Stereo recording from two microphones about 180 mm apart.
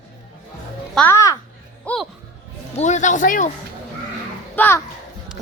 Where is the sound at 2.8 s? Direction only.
40° left (ahead or behind).